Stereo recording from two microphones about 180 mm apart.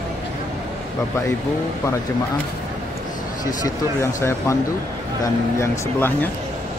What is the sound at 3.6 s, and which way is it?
Speech, 15° left (ahead or behind).